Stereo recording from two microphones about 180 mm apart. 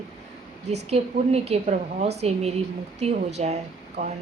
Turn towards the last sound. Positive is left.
turn(degrees=-40)  # may be behind; listen again after turning